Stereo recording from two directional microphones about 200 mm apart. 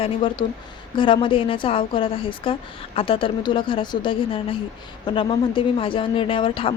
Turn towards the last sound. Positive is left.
turn(degrees=25)  # may be behind; listen again after turning